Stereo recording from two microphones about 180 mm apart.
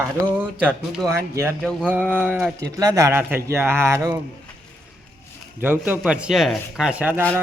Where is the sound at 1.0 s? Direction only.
15° right (ahead or behind).